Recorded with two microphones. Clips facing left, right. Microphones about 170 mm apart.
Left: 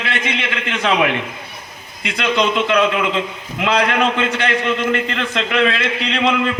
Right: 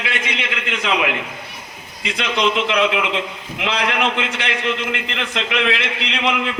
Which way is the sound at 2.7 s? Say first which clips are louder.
Left 2 dB; 50° left (ahead or behind).